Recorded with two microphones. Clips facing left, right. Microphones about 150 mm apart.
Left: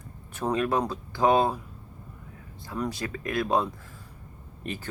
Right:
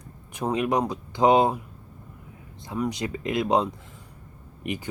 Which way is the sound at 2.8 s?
15° right (ahead or behind).